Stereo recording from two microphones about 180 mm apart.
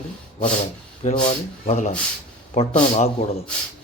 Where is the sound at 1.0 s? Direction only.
40° left (ahead or behind).